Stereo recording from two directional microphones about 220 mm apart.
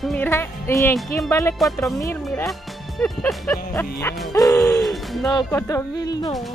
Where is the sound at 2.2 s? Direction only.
Centre (ahead or behind).